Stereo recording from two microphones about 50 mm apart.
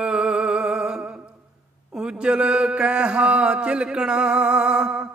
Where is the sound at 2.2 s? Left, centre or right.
Centre.